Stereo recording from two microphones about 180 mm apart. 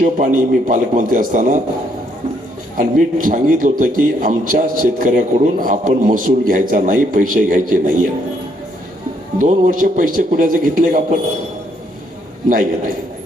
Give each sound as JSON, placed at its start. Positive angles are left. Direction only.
{"t": 0.0, "sound": "a man's voice", "side_deg": -50}
{"t": 2.7, "sound": "a man's voice", "side_deg": -50}
{"t": 9.4, "sound": "a man's voice", "side_deg": -50}